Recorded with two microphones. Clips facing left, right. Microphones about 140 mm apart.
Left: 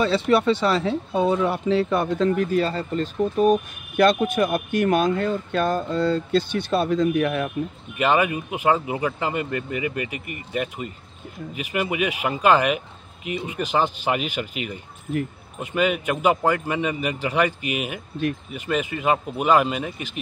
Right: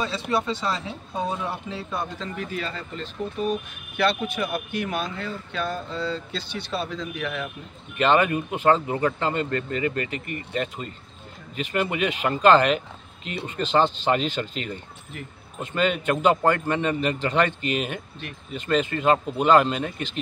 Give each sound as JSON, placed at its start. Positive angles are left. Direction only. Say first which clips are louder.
{"t": 0.0, "sound": "speech", "louder": "left 7 dB", "side_deg": 70}
{"t": 8.0, "sound": "speech", "louder": "even", "side_deg": 10}